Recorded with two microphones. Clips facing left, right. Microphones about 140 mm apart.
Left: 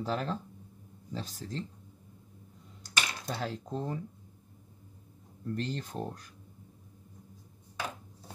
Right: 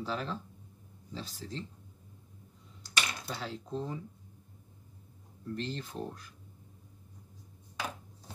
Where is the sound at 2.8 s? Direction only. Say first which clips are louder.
Left 1 dB; 45° left (ahead or behind).